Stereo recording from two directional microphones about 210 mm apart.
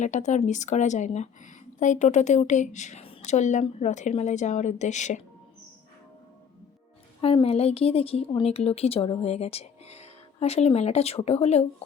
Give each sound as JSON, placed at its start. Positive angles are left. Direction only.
{"t": 0.0, "sound": "a woman's voice", "side_deg": 35}
{"t": 7.2, "sound": "a woman's voice", "side_deg": 25}